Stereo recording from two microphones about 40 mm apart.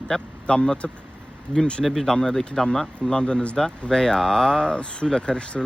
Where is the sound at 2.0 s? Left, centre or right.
Centre.